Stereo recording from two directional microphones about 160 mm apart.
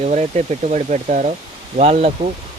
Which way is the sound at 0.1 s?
45° right (ahead or behind).